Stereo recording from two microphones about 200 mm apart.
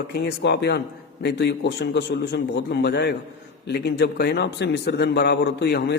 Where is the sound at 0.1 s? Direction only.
55° left (ahead or behind).